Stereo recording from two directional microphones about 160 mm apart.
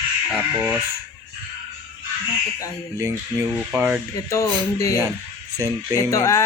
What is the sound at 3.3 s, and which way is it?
Speech, 25° right (ahead or behind).